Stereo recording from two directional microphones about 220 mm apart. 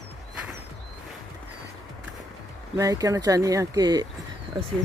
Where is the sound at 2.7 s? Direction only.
15° right (ahead or behind).